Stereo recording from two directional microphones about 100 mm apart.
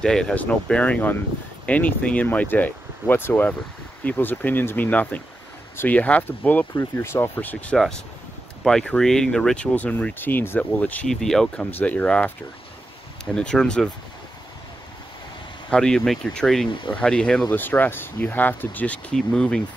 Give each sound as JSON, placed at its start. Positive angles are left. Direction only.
{"t": 0.0, "sound": "speech", "side_deg": 5}
{"t": 6.7, "sound": "speech", "side_deg": 25}
{"t": 7.7, "sound": "speech", "side_deg": 5}
{"t": 11.1, "sound": "speech", "side_deg": 5}
{"t": 15.7, "sound": "speech", "side_deg": 5}
{"t": 17.6, "sound": "speech", "side_deg": 20}